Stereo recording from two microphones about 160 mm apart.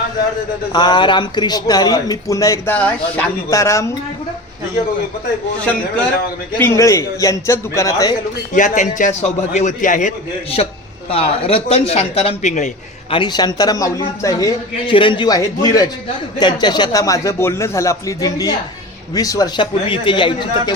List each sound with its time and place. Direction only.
0.7 s a man's voice: 25° left (ahead or behind)
6.6 s a man's voice: 15° left (ahead or behind)
8.5 s a man's voice: 50° left (ahead or behind)
10.6 s a man's voice: 40° left (ahead or behind)
13.1 s a man's voice: 30° left (ahead or behind)